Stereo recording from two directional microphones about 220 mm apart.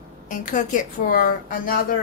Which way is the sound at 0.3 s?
35° left (ahead or behind).